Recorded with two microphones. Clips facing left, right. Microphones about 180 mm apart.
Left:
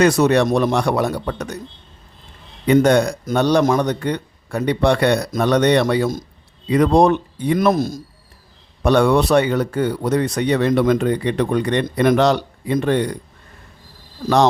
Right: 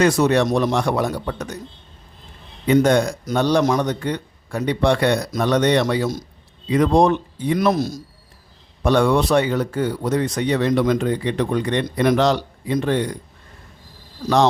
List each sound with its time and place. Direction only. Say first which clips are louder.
0.0 s speech: left 2 dB; 65° left (ahead or behind)
2.6 s speech: left 2 dB; 60° left (ahead or behind)
8.8 s speech: left 2 dB; 65° left (ahead or behind)